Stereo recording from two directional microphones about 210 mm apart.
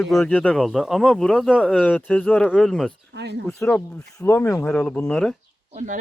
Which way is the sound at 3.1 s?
55° right (ahead or behind).